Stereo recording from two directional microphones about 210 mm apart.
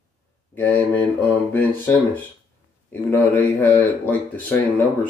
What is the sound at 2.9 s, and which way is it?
Speech, 10° left (ahead or behind).